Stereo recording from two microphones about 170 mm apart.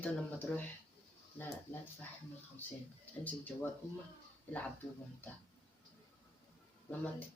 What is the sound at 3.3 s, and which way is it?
Speech, 10° left (ahead or behind).